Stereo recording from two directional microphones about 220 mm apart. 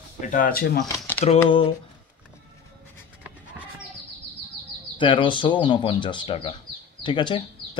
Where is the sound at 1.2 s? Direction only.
25° left (ahead or behind).